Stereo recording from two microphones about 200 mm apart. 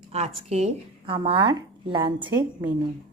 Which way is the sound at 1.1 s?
25° right (ahead or behind).